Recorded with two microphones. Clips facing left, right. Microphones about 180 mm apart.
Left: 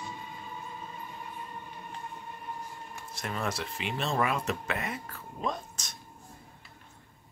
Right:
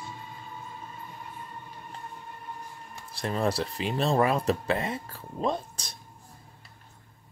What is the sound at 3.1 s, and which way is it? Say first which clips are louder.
Speech: right 7 dB; 30° right (ahead or behind).